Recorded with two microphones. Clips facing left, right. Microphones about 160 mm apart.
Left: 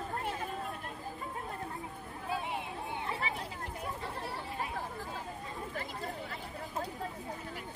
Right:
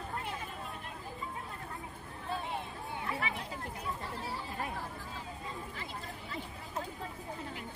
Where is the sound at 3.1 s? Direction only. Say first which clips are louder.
Even; 30° left (ahead or behind).